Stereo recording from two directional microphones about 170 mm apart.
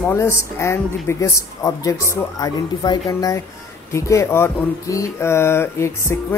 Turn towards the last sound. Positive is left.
turn(degrees=15)  # may be behind; listen again after turning